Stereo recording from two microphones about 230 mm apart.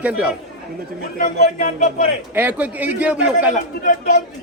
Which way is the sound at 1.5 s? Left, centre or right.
Left.